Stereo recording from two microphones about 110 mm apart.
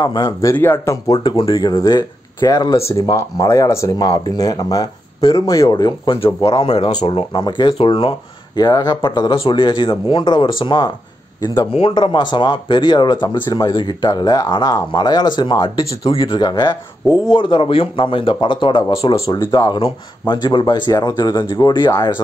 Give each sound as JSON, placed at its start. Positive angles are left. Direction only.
{"t": 0.0, "sound": "speech", "side_deg": 40}
{"t": 0.5, "sound": "speech", "side_deg": 20}
{"t": 1.0, "sound": "speech", "side_deg": 35}
{"t": 6.0, "sound": "speech", "side_deg": 60}
{"t": 6.8, "sound": "speech", "side_deg": 45}
{"t": 7.7, "sound": "speech", "side_deg": 55}
{"t": 8.5, "sound": "speech", "side_deg": 35}
{"t": 11.9, "sound": "speech", "side_deg": 45}